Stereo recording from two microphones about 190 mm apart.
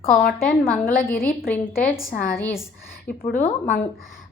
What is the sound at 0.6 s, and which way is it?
A woman's voice, 10° left (ahead or behind).